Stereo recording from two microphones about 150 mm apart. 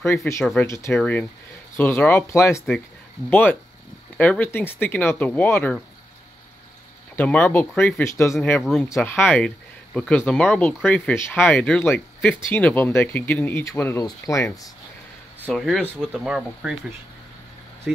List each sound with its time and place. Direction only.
0.0 s speech: 20° left (ahead or behind)
7.2 s speech: 15° left (ahead or behind)
8.6 s speech: centre (ahead or behind)
9.0 s speech: 15° left (ahead or behind)
15.4 s speech: centre (ahead or behind)
17.9 s speech: 5° right (ahead or behind)